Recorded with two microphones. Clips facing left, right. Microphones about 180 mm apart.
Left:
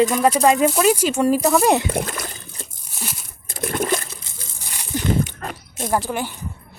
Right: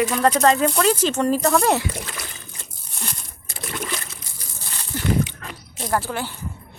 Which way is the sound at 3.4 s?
50° left (ahead or behind).